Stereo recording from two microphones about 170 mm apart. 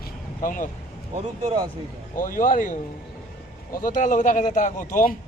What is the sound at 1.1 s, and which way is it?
Speech, 40° right (ahead or behind).